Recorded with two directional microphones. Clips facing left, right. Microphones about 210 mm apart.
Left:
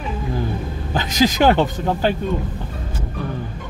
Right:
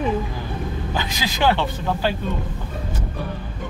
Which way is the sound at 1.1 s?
45° left (ahead or behind).